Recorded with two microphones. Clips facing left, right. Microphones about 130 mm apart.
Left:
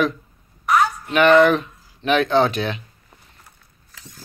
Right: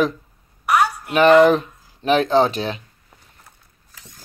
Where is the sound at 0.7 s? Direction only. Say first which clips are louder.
Even; 10° right (ahead or behind).